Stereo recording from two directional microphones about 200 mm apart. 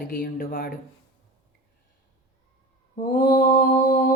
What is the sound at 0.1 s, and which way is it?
Speech, 50° left (ahead or behind).